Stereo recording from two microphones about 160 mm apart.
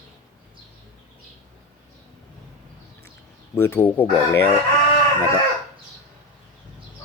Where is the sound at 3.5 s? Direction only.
15° left (ahead or behind).